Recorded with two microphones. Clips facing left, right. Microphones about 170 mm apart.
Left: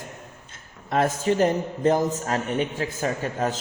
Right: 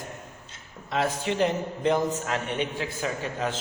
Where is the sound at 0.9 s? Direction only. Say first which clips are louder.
Left 5 dB; 45° left (ahead or behind).